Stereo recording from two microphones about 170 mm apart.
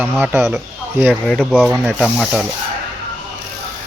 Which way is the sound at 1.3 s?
5° left (ahead or behind).